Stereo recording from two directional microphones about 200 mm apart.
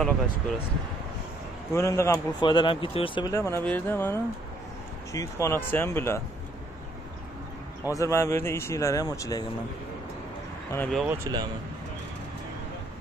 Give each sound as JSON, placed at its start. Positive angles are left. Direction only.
{"t": 1.7, "sound": "speech", "side_deg": 15}
{"t": 7.9, "sound": "speech", "side_deg": 15}
{"t": 10.7, "sound": "speech", "side_deg": 5}
{"t": 11.3, "sound": "speech", "side_deg": -20}